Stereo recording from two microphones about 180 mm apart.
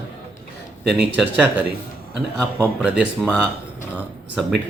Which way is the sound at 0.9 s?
5° right (ahead or behind).